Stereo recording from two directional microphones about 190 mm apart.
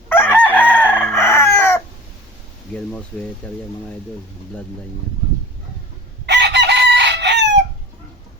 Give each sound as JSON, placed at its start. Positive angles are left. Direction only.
{"t": 0.1, "sound": "chicken", "side_deg": 10}
{"t": 3.4, "sound": "speech", "side_deg": 5}
{"t": 6.2, "sound": "chicken", "side_deg": -65}